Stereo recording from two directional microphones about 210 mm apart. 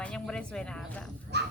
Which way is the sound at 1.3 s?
55° right (ahead or behind).